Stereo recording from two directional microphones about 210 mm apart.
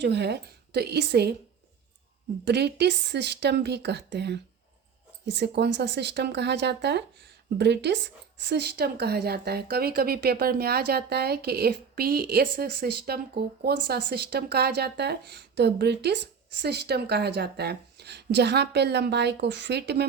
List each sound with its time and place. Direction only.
0.0 s a woman's voice: 55° right (ahead or behind)
2.4 s a woman's voice: 50° right (ahead or behind)